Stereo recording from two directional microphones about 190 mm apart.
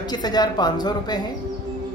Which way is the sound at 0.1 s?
20° left (ahead or behind).